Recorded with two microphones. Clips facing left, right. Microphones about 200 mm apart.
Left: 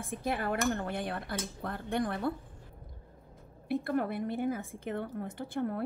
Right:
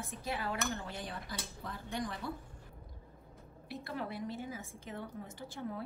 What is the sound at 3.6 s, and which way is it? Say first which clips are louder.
A woman's voice: left 10 dB; 55° left (ahead or behind).